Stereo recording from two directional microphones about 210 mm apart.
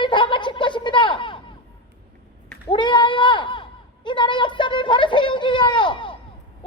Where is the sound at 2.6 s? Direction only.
20° left (ahead or behind).